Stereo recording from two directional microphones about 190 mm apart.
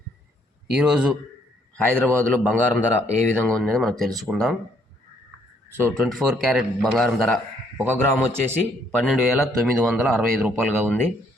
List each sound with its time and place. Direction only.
0.7 s a man's voice: 5° right (ahead or behind)
1.7 s a man's voice: 5° left (ahead or behind)
3.1 s speech: 40° right (ahead or behind)
3.4 s a man's voice: 5° left (ahead or behind)
5.8 s a man's voice: centre (ahead or behind)